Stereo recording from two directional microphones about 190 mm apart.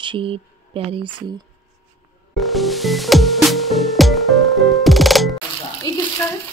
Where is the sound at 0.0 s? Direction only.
25° right (ahead or behind).